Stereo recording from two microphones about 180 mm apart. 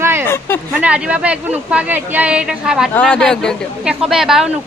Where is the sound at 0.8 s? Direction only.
5° right (ahead or behind).